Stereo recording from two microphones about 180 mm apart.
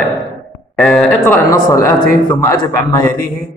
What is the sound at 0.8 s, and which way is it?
Speech, 10° left (ahead or behind).